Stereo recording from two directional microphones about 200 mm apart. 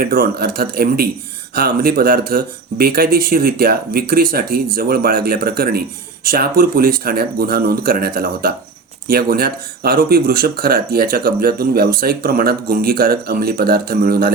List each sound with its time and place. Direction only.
0.0 s speech: 45° right (ahead or behind)